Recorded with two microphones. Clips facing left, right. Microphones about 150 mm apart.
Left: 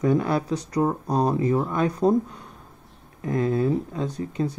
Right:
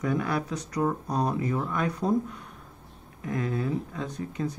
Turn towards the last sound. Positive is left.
turn(degrees=35)  # may be behind; listen again after turning